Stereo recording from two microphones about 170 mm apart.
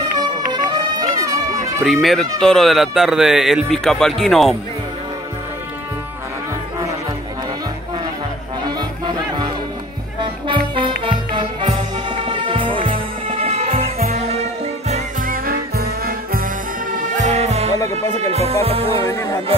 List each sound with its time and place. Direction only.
0.5 s music: 25° right (ahead or behind)
1.9 s speech: centre (ahead or behind)
8.6 s music: 25° right (ahead or behind)
11.1 s music: 30° right (ahead or behind)
14.9 s music: 50° right (ahead or behind)
16.9 s music: 45° right (ahead or behind)